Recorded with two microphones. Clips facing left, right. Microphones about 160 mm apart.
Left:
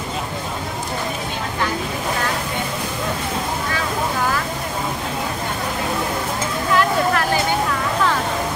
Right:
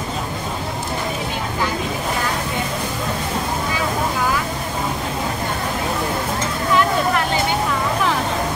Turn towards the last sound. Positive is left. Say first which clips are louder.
# even
turn(degrees=-20)  # may be behind; listen again after turning